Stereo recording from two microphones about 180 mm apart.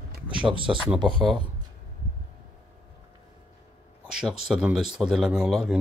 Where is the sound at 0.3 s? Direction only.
30° right (ahead or behind).